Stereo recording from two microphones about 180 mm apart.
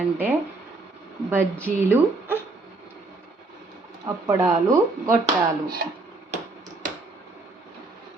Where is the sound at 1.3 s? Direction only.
10° right (ahead or behind).